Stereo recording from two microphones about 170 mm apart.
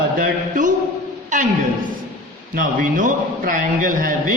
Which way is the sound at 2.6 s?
55° right (ahead or behind).